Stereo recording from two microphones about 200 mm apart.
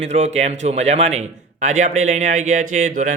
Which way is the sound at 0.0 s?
35° right (ahead or behind).